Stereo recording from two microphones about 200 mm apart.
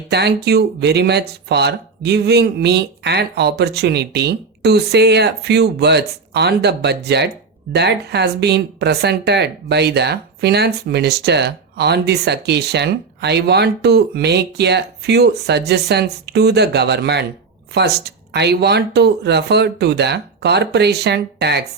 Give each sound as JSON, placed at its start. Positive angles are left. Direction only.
{"t": 0.1, "sound": "speech", "side_deg": -55}